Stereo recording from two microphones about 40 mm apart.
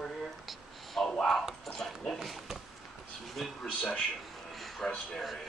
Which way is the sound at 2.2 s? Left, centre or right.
Centre.